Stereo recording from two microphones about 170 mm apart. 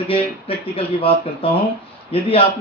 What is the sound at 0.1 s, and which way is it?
Speech, 35° left (ahead or behind).